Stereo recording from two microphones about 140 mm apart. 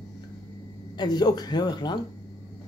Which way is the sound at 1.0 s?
30° left (ahead or behind).